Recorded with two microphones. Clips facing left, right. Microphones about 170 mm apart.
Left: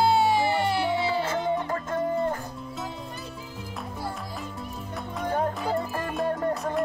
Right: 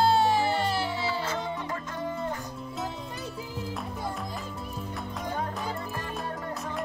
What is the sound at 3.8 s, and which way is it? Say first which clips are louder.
Music: even; 5° left (ahead or behind).